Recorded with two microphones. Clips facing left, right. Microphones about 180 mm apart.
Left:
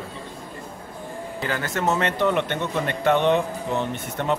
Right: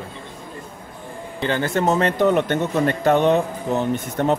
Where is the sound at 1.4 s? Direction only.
30° right (ahead or behind).